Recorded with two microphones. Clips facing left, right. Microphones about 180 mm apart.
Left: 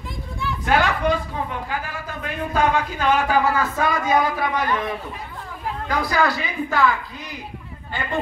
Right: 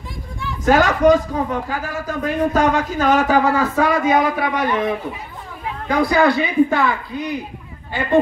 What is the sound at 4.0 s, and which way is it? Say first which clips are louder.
Speech: right 3 dB; 25° right (ahead or behind).